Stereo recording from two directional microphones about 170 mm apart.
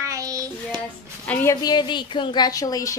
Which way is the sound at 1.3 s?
15° left (ahead or behind).